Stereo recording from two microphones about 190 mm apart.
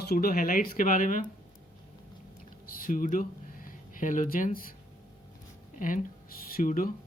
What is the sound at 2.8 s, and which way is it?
Speech, 45° left (ahead or behind).